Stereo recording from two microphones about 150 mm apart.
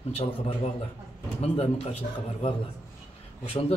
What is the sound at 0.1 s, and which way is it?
A man's voice, 40° left (ahead or behind).